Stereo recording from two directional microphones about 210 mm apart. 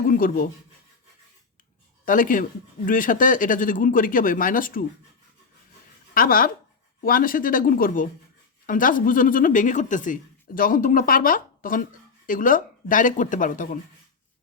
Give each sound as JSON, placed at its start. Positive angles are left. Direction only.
{"t": 0.1, "sound": "speech", "side_deg": 40}
{"t": 2.0, "sound": "speech", "side_deg": 40}
{"t": 6.1, "sound": "speech", "side_deg": 40}